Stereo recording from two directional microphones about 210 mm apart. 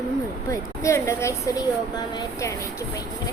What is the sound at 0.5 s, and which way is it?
Speech, 15° left (ahead or behind).